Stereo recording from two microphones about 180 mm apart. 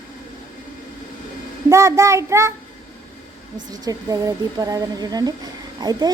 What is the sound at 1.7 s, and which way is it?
Child singing, 15° right (ahead or behind).